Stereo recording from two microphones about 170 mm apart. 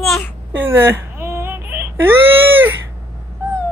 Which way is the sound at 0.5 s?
10° right (ahead or behind).